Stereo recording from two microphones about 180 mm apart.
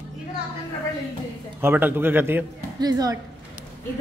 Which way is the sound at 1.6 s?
10° right (ahead or behind).